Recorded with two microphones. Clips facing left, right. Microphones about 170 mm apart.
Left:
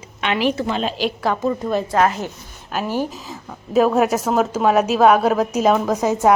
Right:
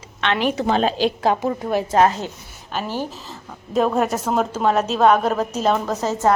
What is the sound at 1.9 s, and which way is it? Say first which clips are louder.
Speech: right 2 dB; 25° right (ahead or behind).